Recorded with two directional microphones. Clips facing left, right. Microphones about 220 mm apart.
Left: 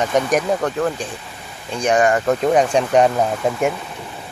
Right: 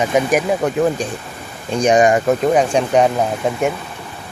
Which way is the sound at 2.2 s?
Centre (ahead or behind).